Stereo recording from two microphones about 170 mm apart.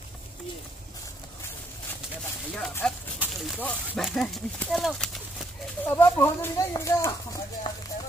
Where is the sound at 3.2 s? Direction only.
Centre (ahead or behind).